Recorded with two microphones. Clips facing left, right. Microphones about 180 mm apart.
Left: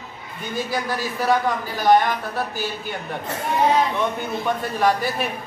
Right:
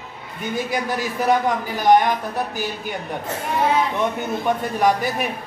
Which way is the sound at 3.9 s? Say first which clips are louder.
Right 1 dB; 20° right (ahead or behind).